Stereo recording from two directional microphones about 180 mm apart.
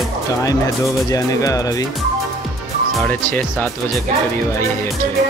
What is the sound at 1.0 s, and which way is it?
Speech, 20° left (ahead or behind).